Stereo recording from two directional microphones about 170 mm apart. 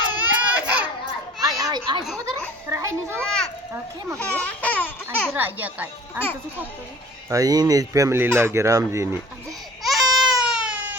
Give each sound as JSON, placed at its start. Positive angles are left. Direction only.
{"t": 0.3, "sound": "child singing", "side_deg": -10}
{"t": 1.4, "sound": "children playing", "side_deg": -20}
{"t": 2.6, "sound": "children playing", "side_deg": -15}
{"t": 3.2, "sound": "children playing", "side_deg": 5}
{"t": 4.2, "sound": "laughter", "side_deg": 10}
{"t": 5.0, "sound": "a child's voice", "side_deg": -10}
{"t": 7.3, "sound": "speech", "side_deg": -20}
{"t": 9.8, "sound": "baby cry", "side_deg": 0}